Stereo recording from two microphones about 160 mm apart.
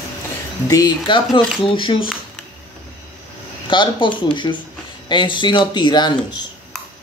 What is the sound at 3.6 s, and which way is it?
Speech, 30° left (ahead or behind).